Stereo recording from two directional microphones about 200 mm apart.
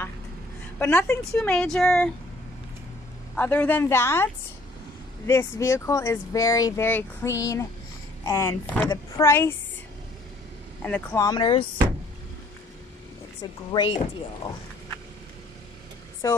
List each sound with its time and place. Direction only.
0.7 s speech: 10° left (ahead or behind)
3.3 s speech: 10° left (ahead or behind)
10.8 s speech: 5° left (ahead or behind)
11.2 s speech: 25° left (ahead or behind)
13.4 s speech: 25° left (ahead or behind)
16.2 s speech: 15° left (ahead or behind)